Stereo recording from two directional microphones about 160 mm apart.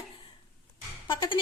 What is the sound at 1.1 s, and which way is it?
Speech, 30° left (ahead or behind).